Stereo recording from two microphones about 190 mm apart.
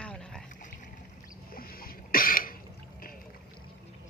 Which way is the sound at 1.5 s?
50° left (ahead or behind).